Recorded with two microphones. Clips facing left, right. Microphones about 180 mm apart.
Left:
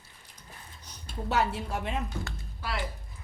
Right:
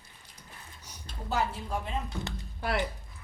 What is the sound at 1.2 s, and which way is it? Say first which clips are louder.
Speech: left 3 dB; 75° left (ahead or behind).